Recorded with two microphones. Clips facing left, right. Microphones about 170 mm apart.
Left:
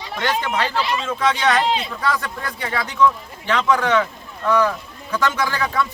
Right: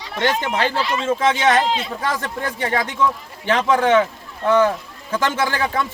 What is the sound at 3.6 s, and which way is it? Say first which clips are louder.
Speech: right 3 dB; 25° right (ahead or behind).